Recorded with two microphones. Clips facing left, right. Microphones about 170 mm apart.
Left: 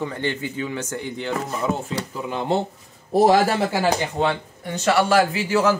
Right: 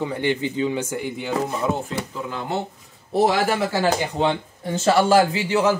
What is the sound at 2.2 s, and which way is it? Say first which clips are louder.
Speech: left 3 dB; 20° left (ahead or behind).